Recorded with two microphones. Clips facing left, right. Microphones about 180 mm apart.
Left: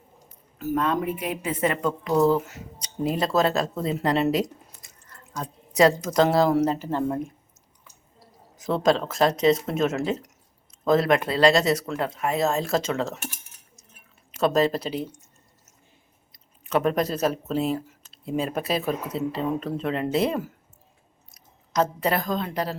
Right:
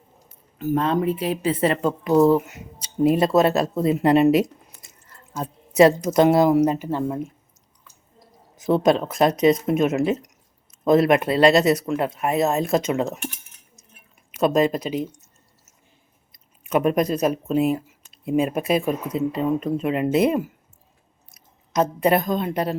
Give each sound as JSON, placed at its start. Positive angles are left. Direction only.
{"t": 0.6, "sound": "speech", "side_deg": -25}
{"t": 2.1, "sound": "speech", "side_deg": -20}
{"t": 5.0, "sound": "drip", "side_deg": -25}
{"t": 6.1, "sound": "speech", "side_deg": -20}
{"t": 8.6, "sound": "speech", "side_deg": -20}
{"t": 14.3, "sound": "speech", "side_deg": -15}
{"t": 16.6, "sound": "a woman's voice", "side_deg": -15}